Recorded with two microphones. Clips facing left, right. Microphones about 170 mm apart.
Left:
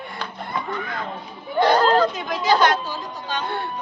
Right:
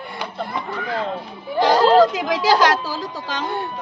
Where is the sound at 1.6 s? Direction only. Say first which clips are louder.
Right 3 dB; 90° right.